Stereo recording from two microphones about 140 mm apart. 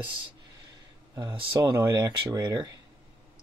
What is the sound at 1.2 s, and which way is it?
Speech, 35° right (ahead or behind).